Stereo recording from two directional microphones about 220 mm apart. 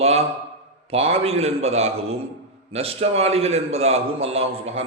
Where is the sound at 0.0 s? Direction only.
30° right (ahead or behind).